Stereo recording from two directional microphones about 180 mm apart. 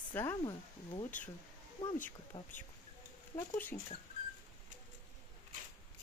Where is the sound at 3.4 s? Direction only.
10° left (ahead or behind).